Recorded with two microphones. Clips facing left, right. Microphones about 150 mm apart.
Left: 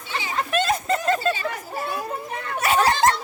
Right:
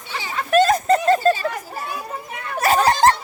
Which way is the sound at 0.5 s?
40° right (ahead or behind).